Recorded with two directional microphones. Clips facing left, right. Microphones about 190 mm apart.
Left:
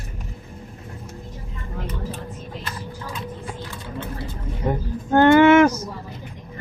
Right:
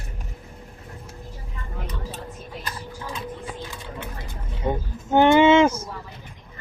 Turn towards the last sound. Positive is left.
turn(degrees=-25)  # may be behind; listen again after turning